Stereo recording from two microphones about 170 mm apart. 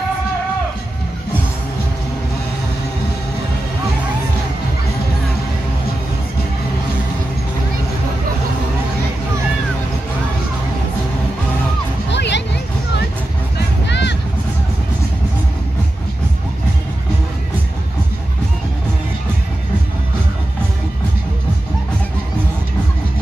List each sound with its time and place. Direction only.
12.1 s music: 90° left
13.8 s vehicle: 90° left